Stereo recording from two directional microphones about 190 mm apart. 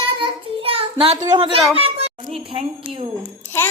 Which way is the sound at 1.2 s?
30° right (ahead or behind).